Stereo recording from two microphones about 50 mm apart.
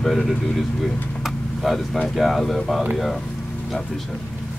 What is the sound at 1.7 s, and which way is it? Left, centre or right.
Speech, centre.